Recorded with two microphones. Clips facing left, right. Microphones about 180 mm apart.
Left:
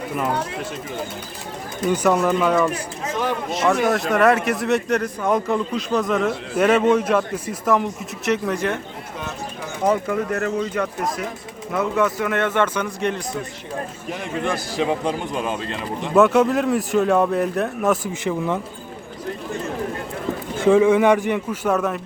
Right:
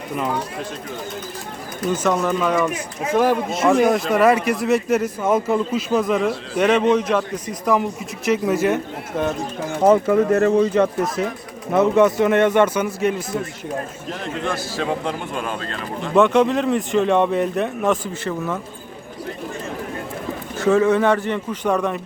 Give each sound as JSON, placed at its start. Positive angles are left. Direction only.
{"t": 1.9, "sound": "speech", "side_deg": 10}
{"t": 9.8, "sound": "a man's voice", "side_deg": -30}
{"t": 14.1, "sound": "a man's voice", "side_deg": 15}
{"t": 16.1, "sound": "speech", "side_deg": 5}
{"t": 18.2, "sound": "a man's voice", "side_deg": 15}
{"t": 20.7, "sound": "a man's voice", "side_deg": 10}